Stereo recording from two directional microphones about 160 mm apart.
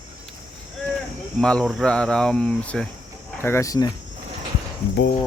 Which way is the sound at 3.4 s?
15° left (ahead or behind).